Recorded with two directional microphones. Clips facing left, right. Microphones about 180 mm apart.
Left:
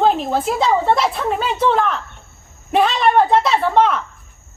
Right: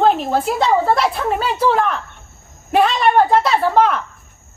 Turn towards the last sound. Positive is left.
turn(degrees=0)  # may be behind; listen again after turning